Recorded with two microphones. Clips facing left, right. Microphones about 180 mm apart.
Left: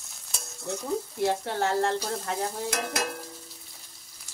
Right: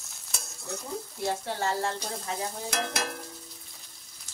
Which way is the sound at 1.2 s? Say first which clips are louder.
Left 3 dB; 60° left (ahead or behind).